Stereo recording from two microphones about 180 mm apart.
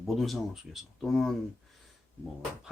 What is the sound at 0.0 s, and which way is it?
Speech, centre (ahead or behind).